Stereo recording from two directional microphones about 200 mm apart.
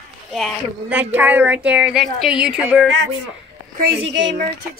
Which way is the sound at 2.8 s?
65° right (ahead or behind).